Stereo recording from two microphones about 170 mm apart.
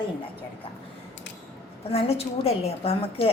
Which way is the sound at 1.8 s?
35° left (ahead or behind).